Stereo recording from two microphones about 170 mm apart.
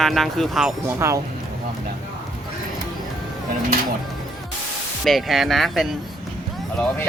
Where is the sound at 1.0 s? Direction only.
15° right (ahead or behind).